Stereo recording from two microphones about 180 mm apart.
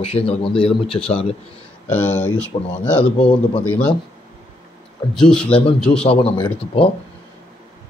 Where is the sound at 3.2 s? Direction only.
30° left (ahead or behind).